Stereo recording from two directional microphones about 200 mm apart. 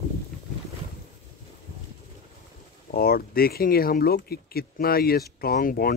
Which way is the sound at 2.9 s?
50° left (ahead or behind).